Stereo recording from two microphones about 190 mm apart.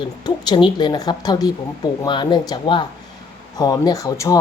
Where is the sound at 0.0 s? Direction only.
25° left (ahead or behind).